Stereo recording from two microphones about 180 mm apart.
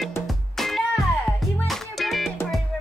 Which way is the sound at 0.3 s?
Centre (ahead or behind).